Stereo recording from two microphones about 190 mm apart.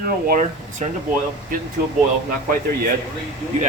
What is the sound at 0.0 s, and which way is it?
Speech, 45° right (ahead or behind).